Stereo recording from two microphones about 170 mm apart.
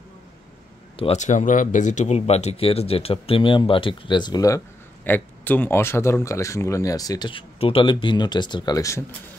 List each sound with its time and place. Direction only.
0.9 s speech: 40° left (ahead or behind); by 4.6 s 20° left (ahead or behind)
5.0 s speech: 10° left (ahead or behind)